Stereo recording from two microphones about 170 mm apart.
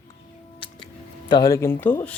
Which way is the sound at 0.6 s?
30° left (ahead or behind).